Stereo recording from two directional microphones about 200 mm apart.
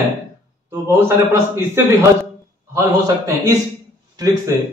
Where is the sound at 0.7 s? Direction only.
15° right (ahead or behind).